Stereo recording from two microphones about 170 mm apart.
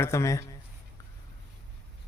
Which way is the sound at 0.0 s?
15° left (ahead or behind).